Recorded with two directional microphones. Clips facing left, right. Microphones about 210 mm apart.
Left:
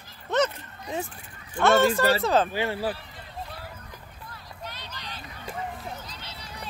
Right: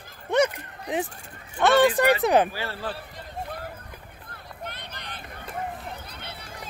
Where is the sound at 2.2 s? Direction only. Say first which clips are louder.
Right 3 dB; 15° right (ahead or behind).